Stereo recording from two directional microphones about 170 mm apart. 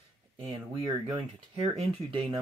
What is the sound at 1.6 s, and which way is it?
Speech, 35° right (ahead or behind).